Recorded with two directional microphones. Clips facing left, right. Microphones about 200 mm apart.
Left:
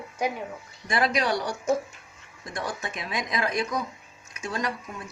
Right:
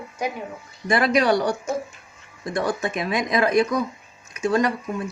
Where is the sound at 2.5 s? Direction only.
65° right (ahead or behind).